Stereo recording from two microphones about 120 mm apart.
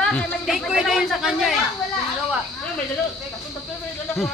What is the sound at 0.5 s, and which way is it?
Speech, centre (ahead or behind).